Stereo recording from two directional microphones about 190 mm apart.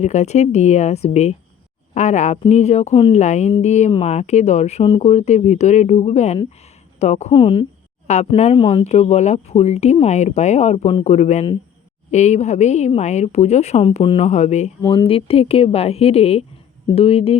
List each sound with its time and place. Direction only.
0.0 s speech: 35° left (ahead or behind)
7.3 s a woman's voice: 25° left (ahead or behind)
8.0 s speech: 35° left (ahead or behind)
14.8 s speech: 25° left (ahead or behind)